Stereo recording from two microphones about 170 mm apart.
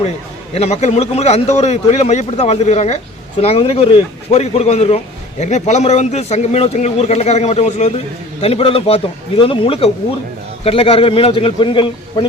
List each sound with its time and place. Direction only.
0.5 s a man's voice: 40° left (ahead or behind)